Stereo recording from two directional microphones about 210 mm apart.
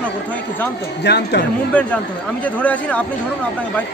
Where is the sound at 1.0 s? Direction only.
55° left (ahead or behind).